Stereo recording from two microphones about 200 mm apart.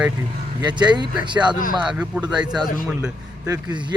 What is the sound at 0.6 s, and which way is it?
Speech, 20° right (ahead or behind).